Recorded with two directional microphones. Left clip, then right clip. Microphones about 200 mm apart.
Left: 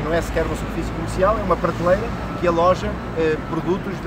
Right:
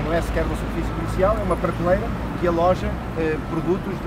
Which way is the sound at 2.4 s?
15° left (ahead or behind).